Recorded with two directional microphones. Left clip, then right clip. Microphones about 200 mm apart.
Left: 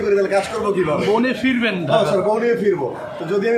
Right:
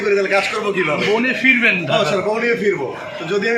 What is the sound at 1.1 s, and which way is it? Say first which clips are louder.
A man's voice: right 3 dB; 5° left (ahead or behind).